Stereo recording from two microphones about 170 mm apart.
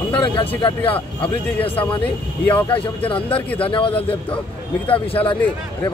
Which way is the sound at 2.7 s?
30° left (ahead or behind).